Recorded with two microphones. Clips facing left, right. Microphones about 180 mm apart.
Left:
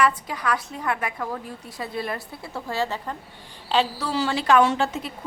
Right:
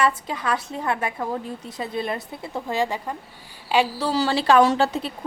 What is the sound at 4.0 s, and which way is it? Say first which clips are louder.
A woman's voice: right 3 dB; 35° right (ahead or behind).